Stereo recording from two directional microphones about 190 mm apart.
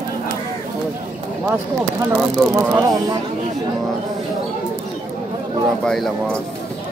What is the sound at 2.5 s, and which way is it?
Speech, 15° right (ahead or behind).